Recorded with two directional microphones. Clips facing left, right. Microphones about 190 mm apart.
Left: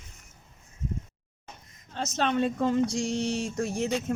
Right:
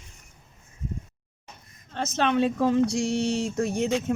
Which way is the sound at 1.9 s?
75° right (ahead or behind).